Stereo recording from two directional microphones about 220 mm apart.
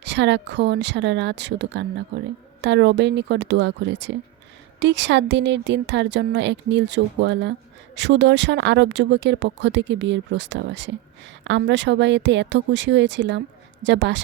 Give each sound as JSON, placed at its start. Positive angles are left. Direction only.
{"t": 0.0, "sound": "speech", "side_deg": -50}